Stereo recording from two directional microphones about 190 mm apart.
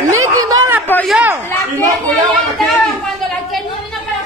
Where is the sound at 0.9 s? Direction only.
10° left (ahead or behind).